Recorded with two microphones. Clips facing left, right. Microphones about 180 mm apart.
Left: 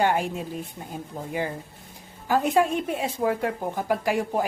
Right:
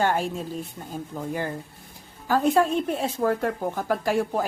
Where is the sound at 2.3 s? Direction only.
15° left (ahead or behind).